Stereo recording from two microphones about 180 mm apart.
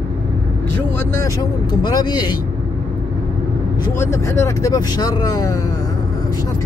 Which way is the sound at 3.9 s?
15° left (ahead or behind).